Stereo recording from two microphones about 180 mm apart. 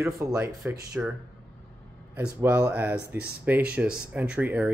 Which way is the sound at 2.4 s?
10° right (ahead or behind).